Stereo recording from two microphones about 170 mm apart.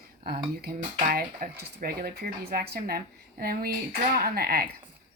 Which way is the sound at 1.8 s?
65° right (ahead or behind).